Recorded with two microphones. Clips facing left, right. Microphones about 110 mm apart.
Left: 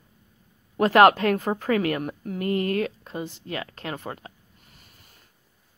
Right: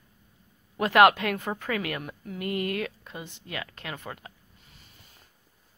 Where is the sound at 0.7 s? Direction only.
35° left (ahead or behind).